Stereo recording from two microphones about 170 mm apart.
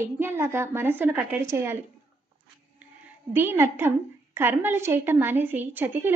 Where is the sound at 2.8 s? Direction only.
10° right (ahead or behind).